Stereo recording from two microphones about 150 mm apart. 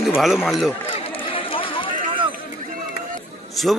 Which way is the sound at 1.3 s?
35° left (ahead or behind).